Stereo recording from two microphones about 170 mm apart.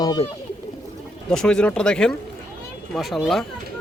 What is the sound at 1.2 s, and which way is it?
Speech, 5° left (ahead or behind).